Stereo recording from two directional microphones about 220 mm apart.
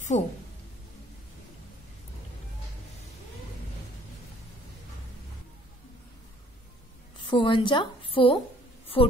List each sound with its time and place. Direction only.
0.1 s a woman's voice: 30° left (ahead or behind)
7.2 s a woman's voice: 20° left (ahead or behind)
9.0 s a sound: 25° left (ahead or behind)